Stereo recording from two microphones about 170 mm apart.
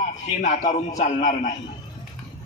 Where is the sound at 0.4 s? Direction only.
45° left (ahead or behind).